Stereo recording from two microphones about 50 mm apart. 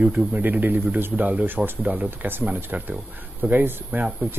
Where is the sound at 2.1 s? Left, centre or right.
Right.